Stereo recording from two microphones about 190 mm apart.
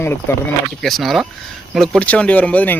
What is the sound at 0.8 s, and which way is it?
Speech, centre (ahead or behind).